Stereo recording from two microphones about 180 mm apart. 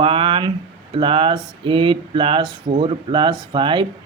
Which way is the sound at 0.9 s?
30° right (ahead or behind).